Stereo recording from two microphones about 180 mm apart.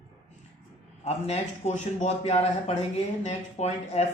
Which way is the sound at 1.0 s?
35° left (ahead or behind).